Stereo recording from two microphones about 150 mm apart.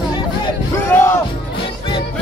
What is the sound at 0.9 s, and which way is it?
Music, 15° left (ahead or behind).